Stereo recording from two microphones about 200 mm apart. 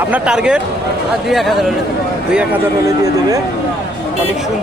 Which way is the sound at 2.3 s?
15° right (ahead or behind).